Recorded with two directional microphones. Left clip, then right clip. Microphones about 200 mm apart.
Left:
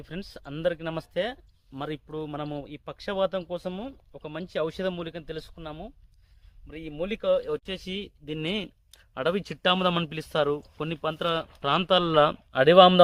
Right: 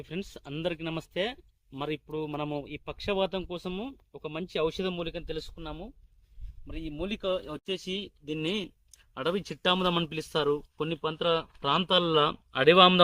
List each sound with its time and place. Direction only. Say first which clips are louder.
0.0 s speech: right 1 dB; 10° left (ahead or behind); by 13.0 s 50° left (ahead or behind)